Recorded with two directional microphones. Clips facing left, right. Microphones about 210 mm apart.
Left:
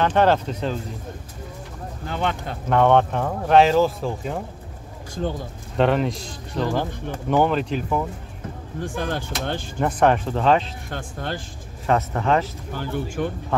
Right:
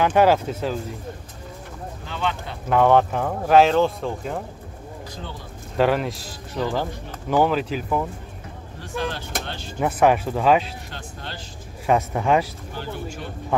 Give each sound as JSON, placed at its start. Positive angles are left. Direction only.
{"t": 0.0, "sound": "speech", "side_deg": -10}
{"t": 2.0, "sound": "speech", "side_deg": 50}
{"t": 2.7, "sound": "speech", "side_deg": -5}
{"t": 5.8, "sound": "speech", "side_deg": -5}
{"t": 8.8, "sound": "speech", "side_deg": 50}
{"t": 9.8, "sound": "speech", "side_deg": -5}
{"t": 10.9, "sound": "speech", "side_deg": 50}
{"t": 11.8, "sound": "speech", "side_deg": -10}
{"t": 12.7, "sound": "speech", "side_deg": 50}
{"t": 13.5, "sound": "speech", "side_deg": -15}